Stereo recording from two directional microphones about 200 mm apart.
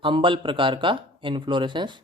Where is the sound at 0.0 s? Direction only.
25° right (ahead or behind).